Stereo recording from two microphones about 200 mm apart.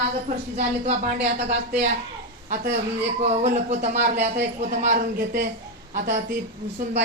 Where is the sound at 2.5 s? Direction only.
40° right (ahead or behind).